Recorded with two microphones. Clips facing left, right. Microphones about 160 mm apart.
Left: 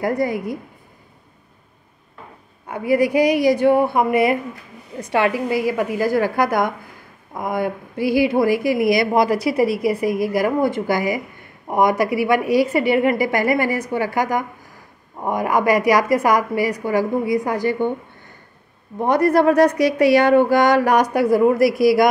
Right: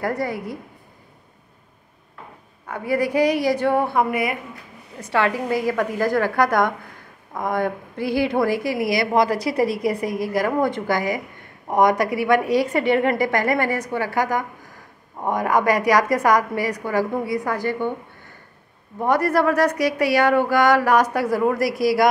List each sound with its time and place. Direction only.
0.0 s a woman's voice: 15° left (ahead or behind)
2.7 s a woman's voice: 15° left (ahead or behind)
4.1 s a woman's voice: 30° left (ahead or behind)
5.1 s a woman's voice: 10° left (ahead or behind)
18.9 s a woman's voice: 20° left (ahead or behind)